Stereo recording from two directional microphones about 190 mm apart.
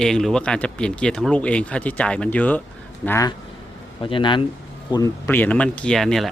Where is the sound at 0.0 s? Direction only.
Centre (ahead or behind).